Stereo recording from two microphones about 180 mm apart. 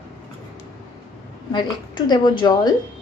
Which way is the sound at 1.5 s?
25° left (ahead or behind).